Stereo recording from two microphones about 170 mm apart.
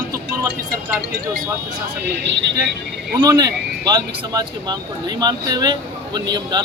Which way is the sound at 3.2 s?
25° right (ahead or behind).